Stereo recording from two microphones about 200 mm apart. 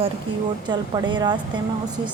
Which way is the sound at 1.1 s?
20° right (ahead or behind).